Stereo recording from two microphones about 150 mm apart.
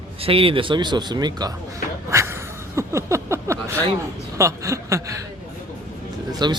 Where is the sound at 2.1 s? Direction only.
20° right (ahead or behind).